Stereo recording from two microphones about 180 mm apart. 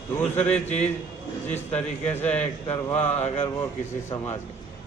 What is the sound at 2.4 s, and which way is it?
A man's voice, 35° left (ahead or behind).